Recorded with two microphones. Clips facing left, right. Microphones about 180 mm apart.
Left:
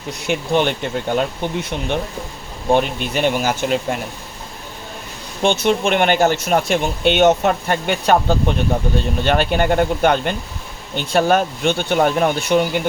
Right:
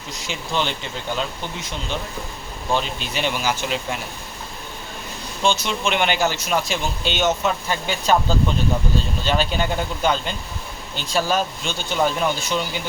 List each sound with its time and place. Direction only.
0.1 s speech: 60° left (ahead or behind)
5.4 s speech: 60° left (ahead or behind)